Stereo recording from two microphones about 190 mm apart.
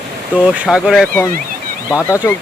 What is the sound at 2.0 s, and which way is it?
Speech, 15° left (ahead or behind).